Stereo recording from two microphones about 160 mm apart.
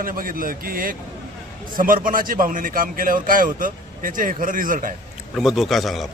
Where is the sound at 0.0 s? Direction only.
60° right (ahead or behind).